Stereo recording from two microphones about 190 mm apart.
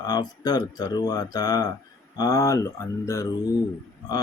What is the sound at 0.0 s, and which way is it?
Speech, 20° left (ahead or behind).